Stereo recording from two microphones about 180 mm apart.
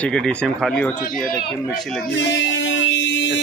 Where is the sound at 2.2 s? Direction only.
90° left.